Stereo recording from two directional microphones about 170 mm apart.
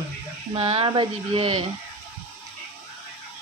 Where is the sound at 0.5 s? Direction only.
35° right (ahead or behind).